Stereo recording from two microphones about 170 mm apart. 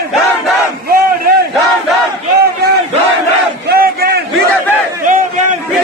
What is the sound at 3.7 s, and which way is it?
Crowd, 65° right (ahead or behind).